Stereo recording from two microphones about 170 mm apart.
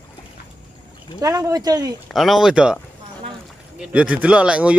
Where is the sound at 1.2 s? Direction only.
20° right (ahead or behind).